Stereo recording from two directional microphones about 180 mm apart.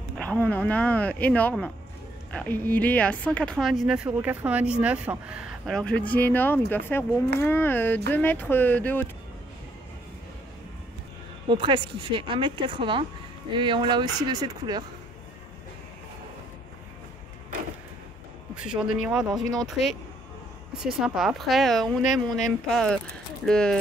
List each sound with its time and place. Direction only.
0.2 s speech: 10° left (ahead or behind)
11.4 s speech: 25° right (ahead or behind)
18.5 s speech: 5° right (ahead or behind)
21.0 s speech: centre (ahead or behind)